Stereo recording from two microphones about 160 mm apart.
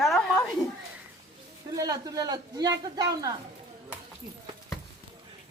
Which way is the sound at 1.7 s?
25° right (ahead or behind).